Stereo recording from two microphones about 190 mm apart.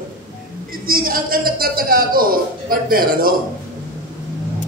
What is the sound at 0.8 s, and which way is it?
A man's voice, 50° right (ahead or behind).